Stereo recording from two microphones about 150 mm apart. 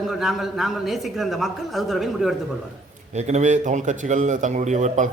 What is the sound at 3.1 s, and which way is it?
A man's voice, 50° right (ahead or behind).